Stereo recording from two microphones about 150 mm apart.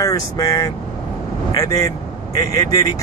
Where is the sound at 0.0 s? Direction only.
20° left (ahead or behind).